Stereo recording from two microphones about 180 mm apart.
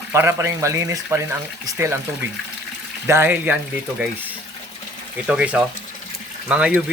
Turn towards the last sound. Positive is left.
turn(degrees=-5)  # may be behind; listen again after turning